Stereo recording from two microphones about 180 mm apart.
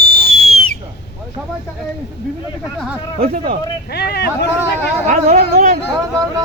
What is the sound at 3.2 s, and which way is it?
Speech, 55° right (ahead or behind).